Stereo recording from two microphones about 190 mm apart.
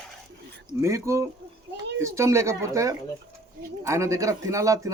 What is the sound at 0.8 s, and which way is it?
A man's voice, 15° right (ahead or behind).